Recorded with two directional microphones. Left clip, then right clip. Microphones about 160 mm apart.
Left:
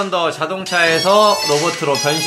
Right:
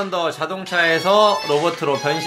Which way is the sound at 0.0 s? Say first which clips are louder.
Left 4 dB; 15° left (ahead or behind).